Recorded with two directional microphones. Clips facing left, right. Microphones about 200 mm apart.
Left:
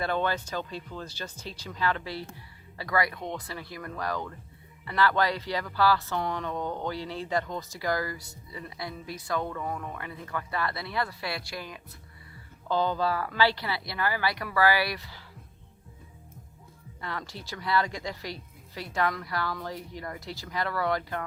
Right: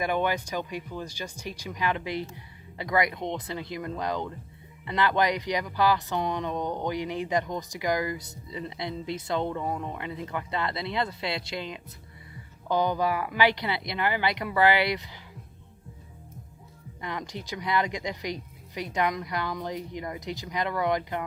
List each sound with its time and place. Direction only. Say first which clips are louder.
0.0 s a woman's voice: right 2 dB; 15° right (ahead or behind)
17.0 s a woman's voice: right 3 dB; 15° right (ahead or behind)